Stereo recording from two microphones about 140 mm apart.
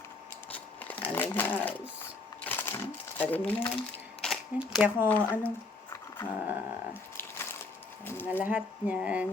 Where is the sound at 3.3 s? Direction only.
10° left (ahead or behind).